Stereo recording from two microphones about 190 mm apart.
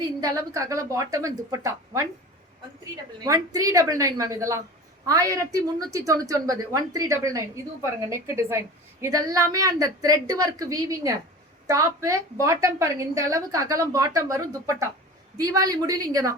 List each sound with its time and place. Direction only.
0.2 s a woman's voice: 15° right (ahead or behind)
3.2 s a woman's voice: 20° right (ahead or behind)